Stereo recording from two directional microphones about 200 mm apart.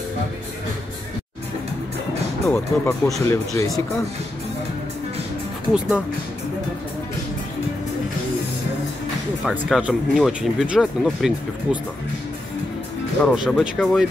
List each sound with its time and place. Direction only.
2.5 s speech: 10° left (ahead or behind)
5.7 s speech: 5° right (ahead or behind)
9.4 s speech: 5° right (ahead or behind)
13.2 s speech: centre (ahead or behind)